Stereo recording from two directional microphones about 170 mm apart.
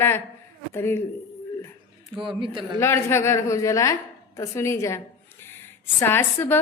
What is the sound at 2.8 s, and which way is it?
A woman's voice, 15° left (ahead or behind).